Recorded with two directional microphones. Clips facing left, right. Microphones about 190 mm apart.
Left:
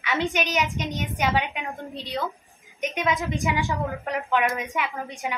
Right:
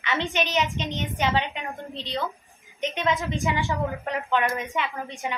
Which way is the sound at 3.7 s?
Centre (ahead or behind).